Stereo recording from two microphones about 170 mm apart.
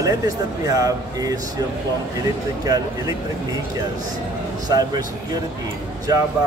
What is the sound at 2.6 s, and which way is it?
Speech, 20° right (ahead or behind).